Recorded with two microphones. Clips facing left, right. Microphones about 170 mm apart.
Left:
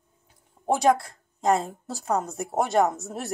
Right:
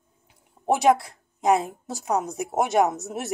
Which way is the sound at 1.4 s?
15° right (ahead or behind).